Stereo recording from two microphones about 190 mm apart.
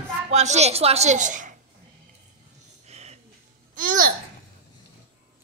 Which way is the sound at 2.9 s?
35° right (ahead or behind).